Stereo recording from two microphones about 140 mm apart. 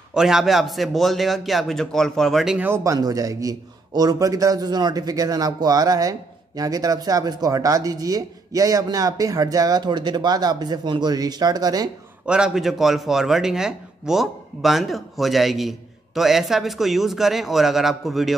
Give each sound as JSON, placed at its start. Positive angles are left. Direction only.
{"t": 0.1, "sound": "speech", "side_deg": -5}
{"t": 2.7, "sound": "a man's voice", "side_deg": -25}
{"t": 12.3, "sound": "speech", "side_deg": -5}